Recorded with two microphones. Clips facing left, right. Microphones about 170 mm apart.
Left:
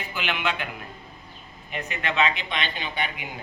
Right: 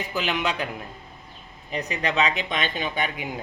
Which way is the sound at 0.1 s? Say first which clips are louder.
Right 1 dB; 40° right (ahead or behind).